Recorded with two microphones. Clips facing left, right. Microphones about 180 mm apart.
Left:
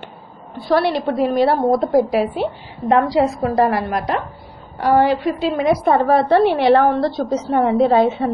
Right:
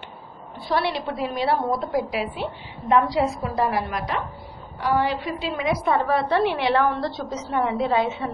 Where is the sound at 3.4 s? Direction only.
60° left (ahead or behind).